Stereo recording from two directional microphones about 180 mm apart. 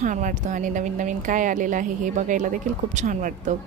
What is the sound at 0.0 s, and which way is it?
A woman's voice, 45° right (ahead or behind).